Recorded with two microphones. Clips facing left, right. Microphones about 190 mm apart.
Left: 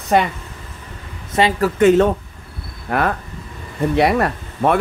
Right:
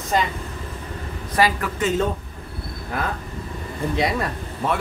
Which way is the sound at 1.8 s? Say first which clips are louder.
Left 10 dB; 65° left (ahead or behind).